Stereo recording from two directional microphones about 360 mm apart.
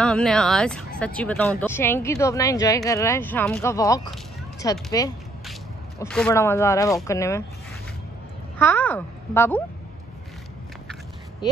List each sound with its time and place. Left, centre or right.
0.0 s speech: centre
8.5 s a woman's voice: centre